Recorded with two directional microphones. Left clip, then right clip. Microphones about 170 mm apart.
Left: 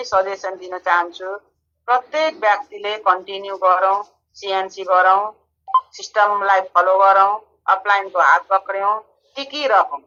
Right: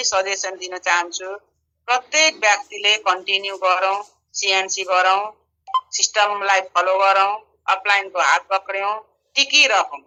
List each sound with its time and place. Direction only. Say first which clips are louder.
0.0 s speech: left 1 dB; 35° right (ahead or behind)